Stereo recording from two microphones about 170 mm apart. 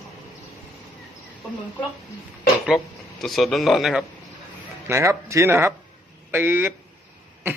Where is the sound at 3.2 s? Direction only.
Centre (ahead or behind).